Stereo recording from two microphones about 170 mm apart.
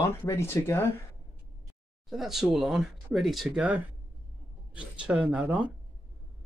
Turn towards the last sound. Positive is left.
turn(degrees=-10)  # may be behind; listen again after turning